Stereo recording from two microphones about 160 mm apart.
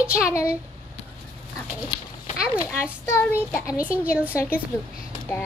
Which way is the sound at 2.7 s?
15° left (ahead or behind).